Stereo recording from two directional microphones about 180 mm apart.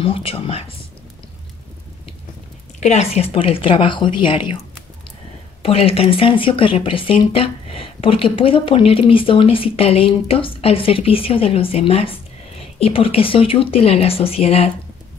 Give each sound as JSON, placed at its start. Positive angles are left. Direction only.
{"t": 0.0, "sound": "speech", "side_deg": 30}
{"t": 2.8, "sound": "speech", "side_deg": 40}
{"t": 5.6, "sound": "speech", "side_deg": 35}